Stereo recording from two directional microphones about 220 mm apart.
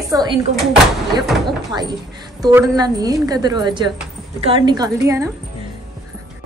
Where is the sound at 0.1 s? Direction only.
20° right (ahead or behind).